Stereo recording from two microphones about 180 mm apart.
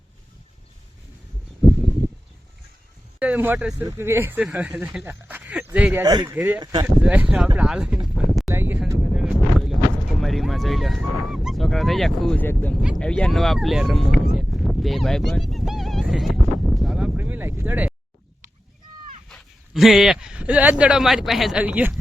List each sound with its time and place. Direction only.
3.2 s speech: 10° right (ahead or behind)
6.6 s speech: 25° right (ahead or behind)
6.8 s speech: 10° right (ahead or behind)
8.0 s a sound: centre (ahead or behind)
8.4 s speech: 10° right (ahead or behind)
9.1 s a sound: centre (ahead or behind)
10.2 s speech: centre (ahead or behind)
14.3 s a sound: centre (ahead or behind)
19.3 s speech: centre (ahead or behind)